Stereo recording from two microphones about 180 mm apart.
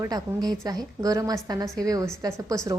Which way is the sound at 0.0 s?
20° right (ahead or behind).